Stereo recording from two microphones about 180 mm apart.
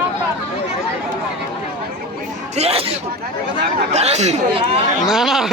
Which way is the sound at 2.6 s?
35° right (ahead or behind).